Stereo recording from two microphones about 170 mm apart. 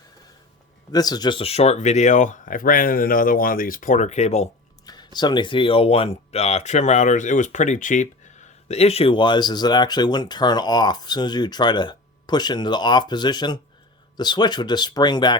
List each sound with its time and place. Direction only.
0.9 s speech: 25° left (ahead or behind); by 4.4 s 40° left (ahead or behind)
4.9 s speech: 25° left (ahead or behind)